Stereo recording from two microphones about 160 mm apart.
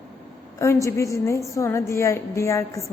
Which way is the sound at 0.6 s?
15° left (ahead or behind).